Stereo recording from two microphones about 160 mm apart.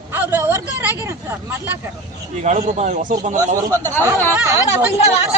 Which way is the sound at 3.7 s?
15° left (ahead or behind).